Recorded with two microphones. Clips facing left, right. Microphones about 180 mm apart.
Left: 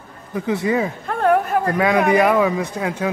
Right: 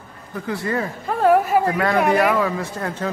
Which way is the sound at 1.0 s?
5° right (ahead or behind).